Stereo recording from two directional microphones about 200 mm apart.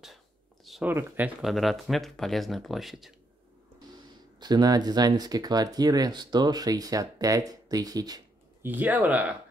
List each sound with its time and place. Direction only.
0.7 s speech: 5° right (ahead or behind)
4.4 s speech: 20° right (ahead or behind)